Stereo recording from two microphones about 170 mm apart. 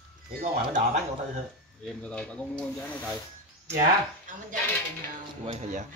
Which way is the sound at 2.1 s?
5° left (ahead or behind).